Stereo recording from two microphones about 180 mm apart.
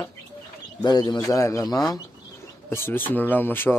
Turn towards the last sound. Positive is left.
turn(degrees=10)  # may be behind; listen again after turning